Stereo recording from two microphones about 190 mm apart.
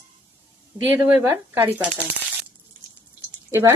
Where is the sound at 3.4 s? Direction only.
15° right (ahead or behind).